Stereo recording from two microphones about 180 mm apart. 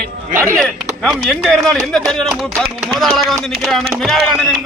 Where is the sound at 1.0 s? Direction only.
Centre (ahead or behind).